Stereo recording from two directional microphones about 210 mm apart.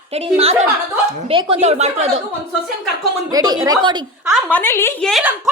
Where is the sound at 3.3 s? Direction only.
20° right (ahead or behind).